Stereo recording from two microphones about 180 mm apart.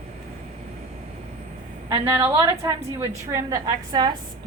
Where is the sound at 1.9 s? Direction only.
15° right (ahead or behind).